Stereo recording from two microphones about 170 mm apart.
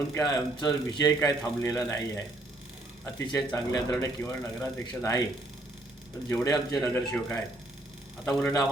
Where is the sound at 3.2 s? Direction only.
20° left (ahead or behind).